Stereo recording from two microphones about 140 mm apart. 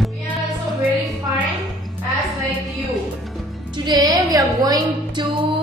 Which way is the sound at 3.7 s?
30° right (ahead or behind).